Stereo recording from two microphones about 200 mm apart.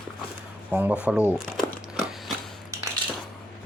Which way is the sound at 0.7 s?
10° right (ahead or behind).